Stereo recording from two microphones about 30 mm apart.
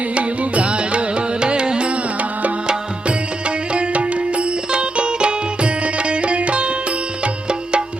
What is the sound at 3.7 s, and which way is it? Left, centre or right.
Music, right.